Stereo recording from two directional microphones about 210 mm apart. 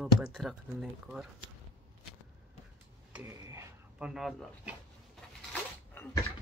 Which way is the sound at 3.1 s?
10° right (ahead or behind).